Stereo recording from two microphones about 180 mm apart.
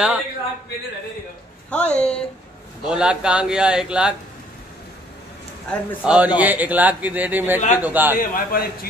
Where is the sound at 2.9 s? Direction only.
5° right (ahead or behind).